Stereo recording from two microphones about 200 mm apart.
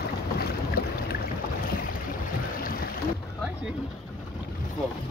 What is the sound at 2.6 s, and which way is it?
Boat, 45° left (ahead or behind).